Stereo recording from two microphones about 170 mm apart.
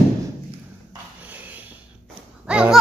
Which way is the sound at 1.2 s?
10° right (ahead or behind).